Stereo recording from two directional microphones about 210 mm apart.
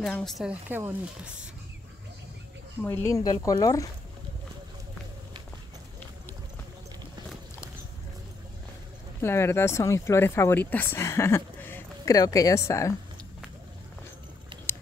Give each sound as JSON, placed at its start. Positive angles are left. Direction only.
{"t": 0.0, "sound": "a woman's voice", "side_deg": 0}
{"t": 2.8, "sound": "speech", "side_deg": 10}
{"t": 9.2, "sound": "speech", "side_deg": 10}